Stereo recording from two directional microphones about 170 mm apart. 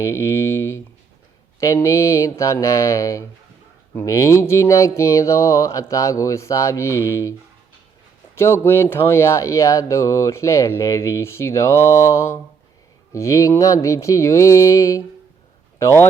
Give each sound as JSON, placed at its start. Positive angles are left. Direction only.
{"t": 0.1, "sound": "speech", "side_deg": 15}
{"t": 8.4, "sound": "speech", "side_deg": 15}